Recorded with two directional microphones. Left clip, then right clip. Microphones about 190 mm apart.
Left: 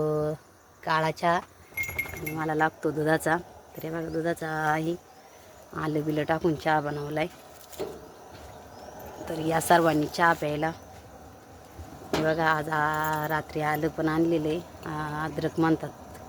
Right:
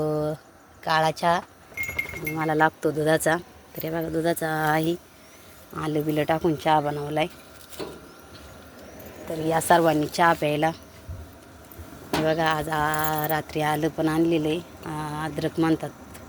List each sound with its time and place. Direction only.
0.0 s a sound: 15° right (ahead or behind)
0.9 s speech: 10° right (ahead or behind); by 4.9 s 30° right (ahead or behind)
5.7 s speech: 5° right (ahead or behind)
9.5 s speech: centre (ahead or behind); by 10.8 s 20° right (ahead or behind)
12.2 s speech: 10° right (ahead or behind)